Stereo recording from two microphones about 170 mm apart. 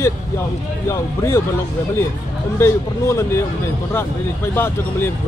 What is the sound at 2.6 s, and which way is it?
Speech, 15° left (ahead or behind).